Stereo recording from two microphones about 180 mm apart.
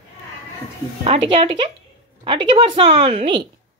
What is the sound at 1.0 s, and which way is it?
A woman's voice, 30° right (ahead or behind).